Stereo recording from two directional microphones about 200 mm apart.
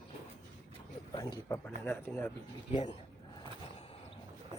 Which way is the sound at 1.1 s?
20° left (ahead or behind).